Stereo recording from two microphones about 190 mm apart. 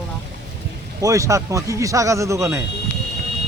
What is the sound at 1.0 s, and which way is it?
Speech, 15° right (ahead or behind).